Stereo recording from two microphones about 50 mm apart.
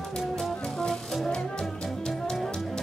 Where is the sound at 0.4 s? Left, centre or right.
Centre.